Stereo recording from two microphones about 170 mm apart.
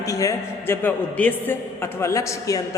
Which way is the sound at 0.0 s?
20° left (ahead or behind).